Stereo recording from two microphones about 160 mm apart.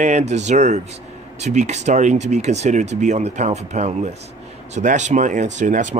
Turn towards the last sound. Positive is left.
turn(degrees=-50)  # may be behind; listen again after turning